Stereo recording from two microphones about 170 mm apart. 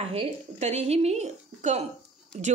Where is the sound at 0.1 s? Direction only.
40° right (ahead or behind).